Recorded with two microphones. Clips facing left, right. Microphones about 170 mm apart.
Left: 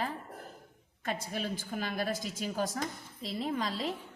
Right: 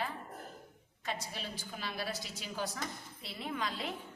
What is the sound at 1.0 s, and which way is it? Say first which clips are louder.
A woman's voice: left 5 dB; 50° left (ahead or behind).